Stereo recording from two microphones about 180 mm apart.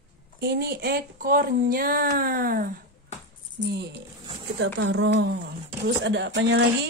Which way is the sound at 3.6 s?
65° right (ahead or behind).